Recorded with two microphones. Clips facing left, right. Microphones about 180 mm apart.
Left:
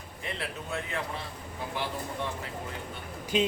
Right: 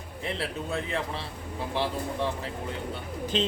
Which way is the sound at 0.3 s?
30° right (ahead or behind).